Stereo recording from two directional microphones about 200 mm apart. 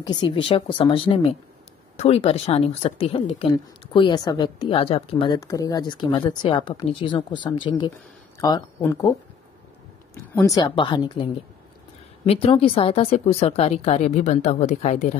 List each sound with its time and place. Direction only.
0.0 s a woman's voice: 20° left (ahead or behind)
10.3 s a woman's voice: 15° left (ahead or behind)
12.3 s speech: 30° left (ahead or behind)